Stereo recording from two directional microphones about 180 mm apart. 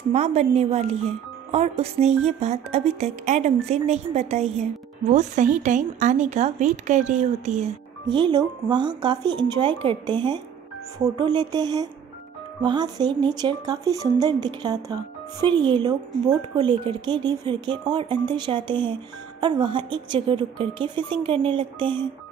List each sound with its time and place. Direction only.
0.1 s a woman's voice: 35° right (ahead or behind)
8.1 s speech: 25° right (ahead or behind)